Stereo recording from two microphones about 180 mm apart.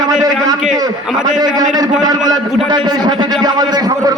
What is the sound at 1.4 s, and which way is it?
A man's voice, 20° right (ahead or behind).